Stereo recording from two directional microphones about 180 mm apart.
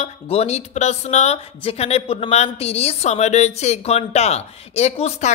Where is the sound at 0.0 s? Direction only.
35° left (ahead or behind).